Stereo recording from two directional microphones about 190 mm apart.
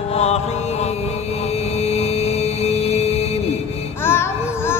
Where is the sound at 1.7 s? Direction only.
35° left (ahead or behind).